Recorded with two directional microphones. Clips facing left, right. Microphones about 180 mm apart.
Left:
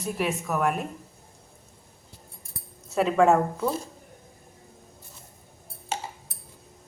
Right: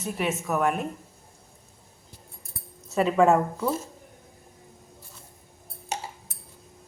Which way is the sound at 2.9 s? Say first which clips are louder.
Even; centre (ahead or behind).